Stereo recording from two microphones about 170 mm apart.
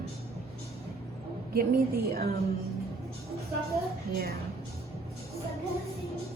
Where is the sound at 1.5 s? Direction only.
65° right (ahead or behind).